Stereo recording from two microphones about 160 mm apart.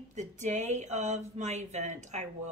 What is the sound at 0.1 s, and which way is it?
A woman's voice, 50° right (ahead or behind).